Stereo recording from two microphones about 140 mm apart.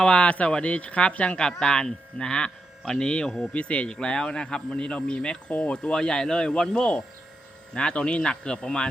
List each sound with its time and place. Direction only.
0.0 s speech: 5° left (ahead or behind)